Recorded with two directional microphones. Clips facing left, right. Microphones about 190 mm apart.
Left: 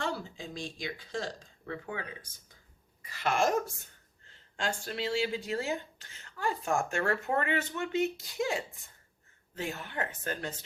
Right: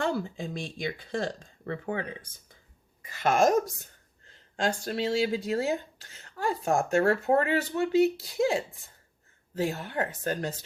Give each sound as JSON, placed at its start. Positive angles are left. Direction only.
{"t": 0.0, "sound": "speech", "side_deg": -55}
{"t": 3.0, "sound": "a sound", "side_deg": -50}
{"t": 4.5, "sound": "speech", "side_deg": -40}